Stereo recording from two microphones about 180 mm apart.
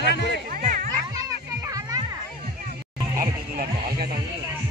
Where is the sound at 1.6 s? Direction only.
20° right (ahead or behind).